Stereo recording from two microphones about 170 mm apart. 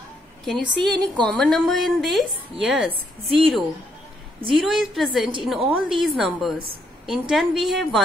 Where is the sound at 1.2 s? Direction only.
5° left (ahead or behind).